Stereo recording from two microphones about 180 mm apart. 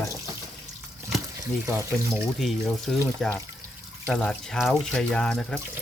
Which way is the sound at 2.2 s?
Centre (ahead or behind).